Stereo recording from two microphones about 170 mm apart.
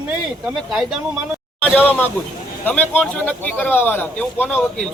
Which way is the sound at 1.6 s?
10° left (ahead or behind).